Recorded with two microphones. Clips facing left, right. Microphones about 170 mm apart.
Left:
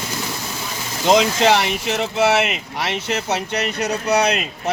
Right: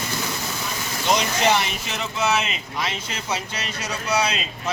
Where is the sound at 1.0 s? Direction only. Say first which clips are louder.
Left 6 dB; 90° left; by 4.7 s 60° left (ahead or behind).